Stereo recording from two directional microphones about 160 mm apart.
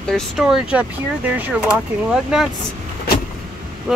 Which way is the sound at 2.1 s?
5° right (ahead or behind).